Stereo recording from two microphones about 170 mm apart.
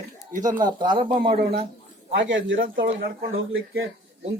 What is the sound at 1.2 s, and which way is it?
Speech, 65° right (ahead or behind).